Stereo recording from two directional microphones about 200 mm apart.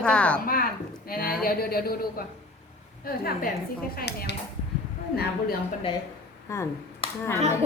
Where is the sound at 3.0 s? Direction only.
50° left (ahead or behind).